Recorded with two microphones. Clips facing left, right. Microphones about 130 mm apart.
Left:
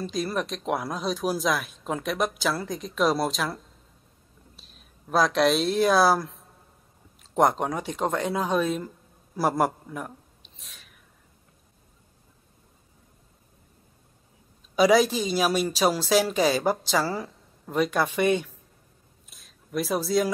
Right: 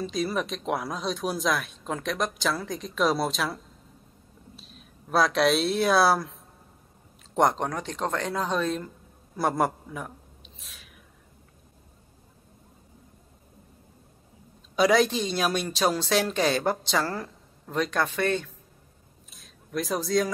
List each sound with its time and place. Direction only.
0.0 s a woman's voice: centre (ahead or behind)
14.8 s a woman's voice: 5° left (ahead or behind)
19.3 s a sound: centre (ahead or behind)